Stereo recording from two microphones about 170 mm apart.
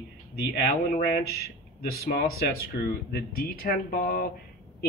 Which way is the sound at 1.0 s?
65° left (ahead or behind).